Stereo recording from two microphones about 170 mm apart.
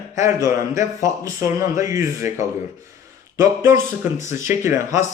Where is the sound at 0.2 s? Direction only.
20° right (ahead or behind).